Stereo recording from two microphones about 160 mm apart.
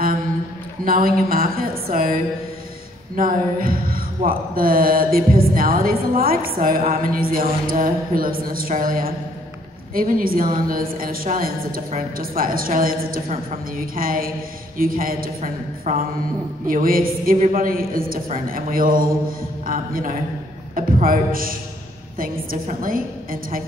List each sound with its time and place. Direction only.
0.8 s a woman's voice: 65° right (ahead or behind)
3.2 s a woman's voice: 60° right (ahead or behind)
15.9 s speech: 50° right (ahead or behind)
16.6 s a woman's voice: 60° right (ahead or behind)
22.8 s a woman's voice: 60° right (ahead or behind)